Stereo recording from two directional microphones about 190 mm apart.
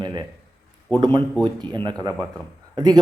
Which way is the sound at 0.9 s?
25° right (ahead or behind).